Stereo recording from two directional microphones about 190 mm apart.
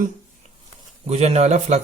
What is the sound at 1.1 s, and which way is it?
Speech, 35° right (ahead or behind).